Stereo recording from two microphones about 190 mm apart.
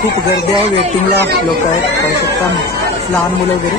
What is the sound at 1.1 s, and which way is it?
Speech, 60° right (ahead or behind).